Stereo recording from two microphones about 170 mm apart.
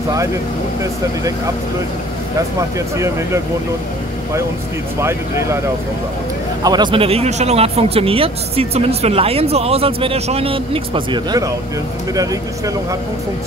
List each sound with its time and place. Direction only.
3.0 s speech: 15° right (ahead or behind)
5.0 s speech: 15° right (ahead or behind)
6.6 s speech: 25° right (ahead or behind)